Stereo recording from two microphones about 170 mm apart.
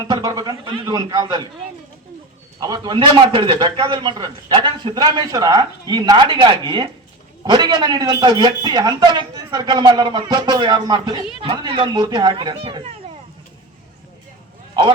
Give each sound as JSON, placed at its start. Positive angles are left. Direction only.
{"t": 0.0, "sound": "a man's voice", "side_deg": -20}
{"t": 2.6, "sound": "a man's voice", "side_deg": -20}